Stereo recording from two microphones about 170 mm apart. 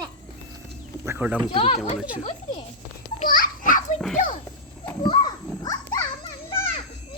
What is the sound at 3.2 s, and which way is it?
Children playing, 55° left (ahead or behind).